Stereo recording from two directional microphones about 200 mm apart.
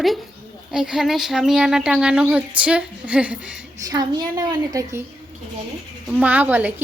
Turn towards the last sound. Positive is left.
turn(degrees=-10)  # may be behind; listen again after turning